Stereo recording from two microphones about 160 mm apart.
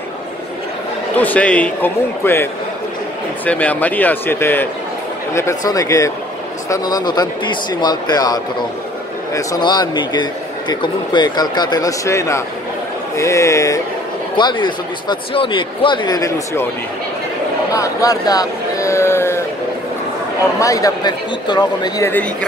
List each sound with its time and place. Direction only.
1.1 s speech: 10° left (ahead or behind)
14.3 s speech: 30° left (ahead or behind)
17.7 s speech: 20° left (ahead or behind)
20.5 s speech: 20° left (ahead or behind)